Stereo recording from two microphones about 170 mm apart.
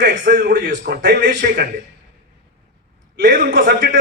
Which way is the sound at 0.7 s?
65° right (ahead or behind).